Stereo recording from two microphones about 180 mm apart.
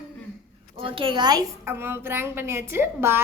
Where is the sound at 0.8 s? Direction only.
30° right (ahead or behind); by 3.2 s 10° right (ahead or behind).